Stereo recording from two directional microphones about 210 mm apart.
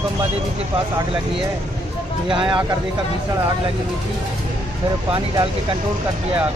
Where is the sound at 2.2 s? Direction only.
25° right (ahead or behind).